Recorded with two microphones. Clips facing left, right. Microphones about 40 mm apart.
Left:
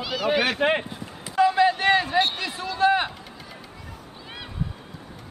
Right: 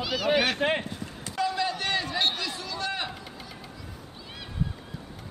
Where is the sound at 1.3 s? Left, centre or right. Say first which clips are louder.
Left 9 dB; left.